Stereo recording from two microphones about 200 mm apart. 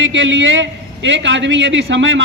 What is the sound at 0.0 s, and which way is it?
A man's voice, 65° right (ahead or behind).